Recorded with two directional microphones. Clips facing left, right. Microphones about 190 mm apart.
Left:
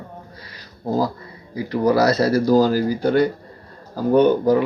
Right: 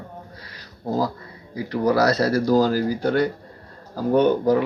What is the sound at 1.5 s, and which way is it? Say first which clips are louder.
A man's voice: left 2 dB; 5° left (ahead or behind).